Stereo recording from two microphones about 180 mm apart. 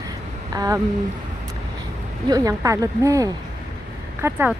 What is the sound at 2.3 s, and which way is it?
Speech, 20° right (ahead or behind).